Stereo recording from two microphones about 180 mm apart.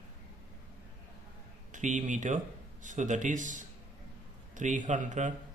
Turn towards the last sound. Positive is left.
turn(degrees=-45)  # may be behind; listen again after turning